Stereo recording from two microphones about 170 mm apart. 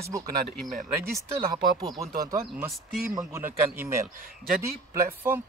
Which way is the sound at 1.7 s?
20° right (ahead or behind).